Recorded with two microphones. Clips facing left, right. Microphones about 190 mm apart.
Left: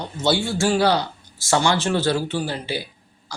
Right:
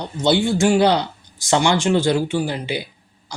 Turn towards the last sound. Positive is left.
turn(degrees=-15)  # may be behind; listen again after turning